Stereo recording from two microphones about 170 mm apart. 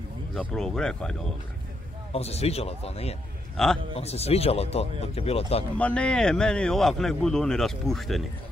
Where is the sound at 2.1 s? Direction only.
35° left (ahead or behind).